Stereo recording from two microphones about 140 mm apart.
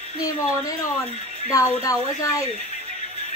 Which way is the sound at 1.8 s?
25° left (ahead or behind).